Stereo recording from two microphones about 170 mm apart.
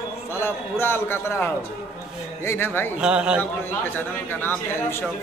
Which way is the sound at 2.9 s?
5° right (ahead or behind).